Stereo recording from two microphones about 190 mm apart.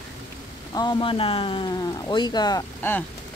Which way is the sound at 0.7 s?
20° left (ahead or behind).